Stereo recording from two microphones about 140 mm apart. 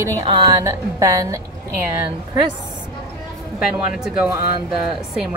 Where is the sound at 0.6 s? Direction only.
20° right (ahead or behind).